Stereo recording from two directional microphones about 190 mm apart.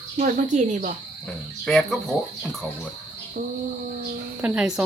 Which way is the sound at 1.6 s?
5° left (ahead or behind).